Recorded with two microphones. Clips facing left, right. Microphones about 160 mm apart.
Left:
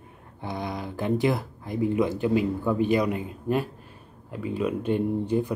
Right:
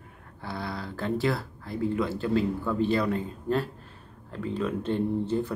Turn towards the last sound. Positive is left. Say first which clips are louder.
# left 2 dB
turn(degrees=15)  # may be behind; listen again after turning